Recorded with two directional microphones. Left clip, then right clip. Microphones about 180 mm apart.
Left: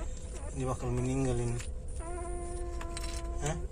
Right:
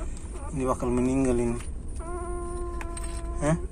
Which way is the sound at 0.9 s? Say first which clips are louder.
Right 8 dB; 30° right (ahead or behind).